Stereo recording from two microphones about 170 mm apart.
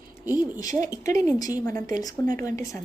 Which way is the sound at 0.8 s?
20° left (ahead or behind).